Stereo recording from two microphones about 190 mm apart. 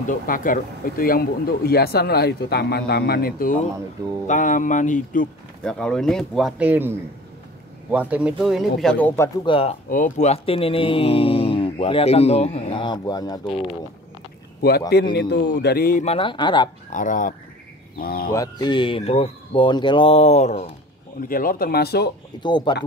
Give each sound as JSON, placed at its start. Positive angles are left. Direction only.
{"t": 0.1, "sound": "speech", "side_deg": 45}
{"t": 5.6, "sound": "speech", "side_deg": 5}
{"t": 9.5, "sound": "speech", "side_deg": 30}
{"t": 9.8, "sound": "speech", "side_deg": 45}
{"t": 15.1, "sound": "speech", "side_deg": 60}
{"t": 16.0, "sound": "speech", "side_deg": 30}
{"t": 16.9, "sound": "speech", "side_deg": 45}
{"t": 18.3, "sound": "speech", "side_deg": 20}
{"t": 21.3, "sound": "speech", "side_deg": 50}
{"t": 22.4, "sound": "speech", "side_deg": 25}